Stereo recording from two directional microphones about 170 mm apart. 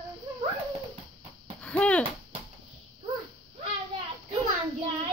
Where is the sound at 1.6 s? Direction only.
5° left (ahead or behind).